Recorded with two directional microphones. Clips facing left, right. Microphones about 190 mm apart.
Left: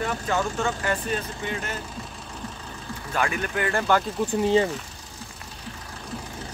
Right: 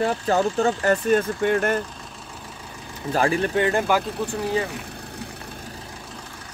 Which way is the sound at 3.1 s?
35° right (ahead or behind).